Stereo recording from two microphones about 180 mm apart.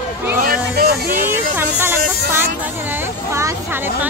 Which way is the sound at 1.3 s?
10° right (ahead or behind).